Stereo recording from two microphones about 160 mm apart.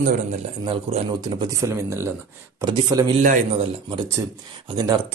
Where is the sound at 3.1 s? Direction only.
50° right (ahead or behind).